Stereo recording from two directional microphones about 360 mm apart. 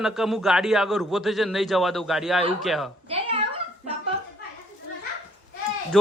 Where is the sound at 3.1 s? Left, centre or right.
Centre.